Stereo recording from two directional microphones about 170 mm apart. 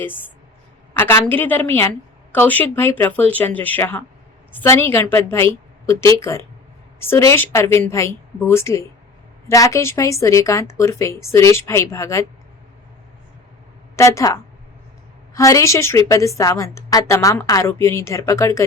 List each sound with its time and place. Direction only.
0.0 s a woman's voice: 10° left (ahead or behind)
13.9 s a woman's voice: 15° left (ahead or behind)
15.4 s a woman's voice: 20° left (ahead or behind)